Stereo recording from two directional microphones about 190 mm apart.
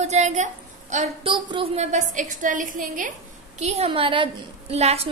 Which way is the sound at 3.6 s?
30° right (ahead or behind).